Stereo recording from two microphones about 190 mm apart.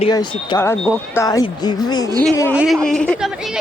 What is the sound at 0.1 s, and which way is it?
Speech, 20° left (ahead or behind).